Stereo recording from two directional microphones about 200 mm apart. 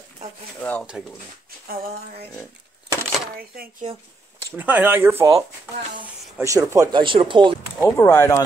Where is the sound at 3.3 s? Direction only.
45° right (ahead or behind).